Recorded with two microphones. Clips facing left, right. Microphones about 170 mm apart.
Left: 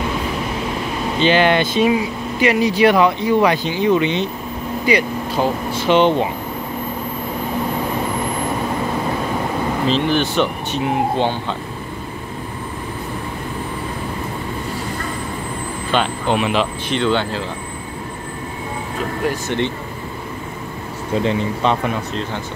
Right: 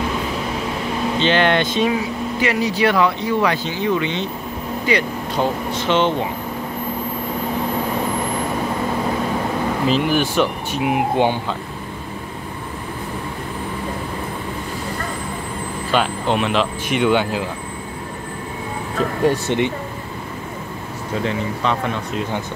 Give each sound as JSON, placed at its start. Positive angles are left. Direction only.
{"t": 1.2, "sound": "speech", "side_deg": 5}
{"t": 2.4, "sound": "speech", "side_deg": 20}
{"t": 9.8, "sound": "speech", "side_deg": -5}
{"t": 15.9, "sound": "speech", "side_deg": 0}
{"t": 16.9, "sound": "speech", "side_deg": -10}
{"t": 19.5, "sound": "speech", "side_deg": -20}
{"t": 21.2, "sound": "speech", "side_deg": 20}